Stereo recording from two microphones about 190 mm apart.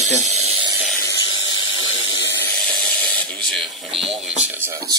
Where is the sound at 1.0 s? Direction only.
25° left (ahead or behind).